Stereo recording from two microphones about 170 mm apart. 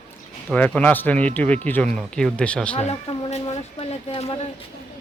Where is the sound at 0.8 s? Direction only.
10° left (ahead or behind).